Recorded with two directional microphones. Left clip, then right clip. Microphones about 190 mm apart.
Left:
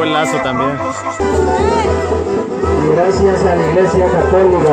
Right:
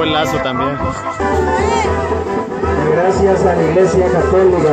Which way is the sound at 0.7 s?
55° left (ahead or behind).